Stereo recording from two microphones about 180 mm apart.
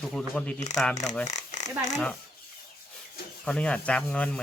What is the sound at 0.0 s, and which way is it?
Speech, 5° left (ahead or behind).